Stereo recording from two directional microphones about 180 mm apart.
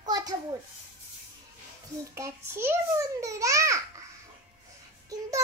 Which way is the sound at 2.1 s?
15° right (ahead or behind).